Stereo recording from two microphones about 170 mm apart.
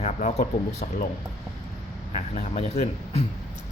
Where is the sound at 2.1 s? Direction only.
40° left (ahead or behind).